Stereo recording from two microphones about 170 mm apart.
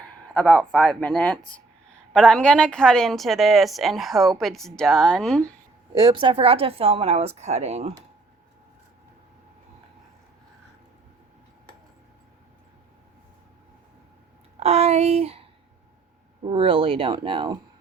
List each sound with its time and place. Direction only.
0.0 s a woman's voice: 10° left (ahead or behind)
5.9 s a woman's voice: 25° right (ahead or behind)
14.6 s a woman's voice: 40° right (ahead or behind)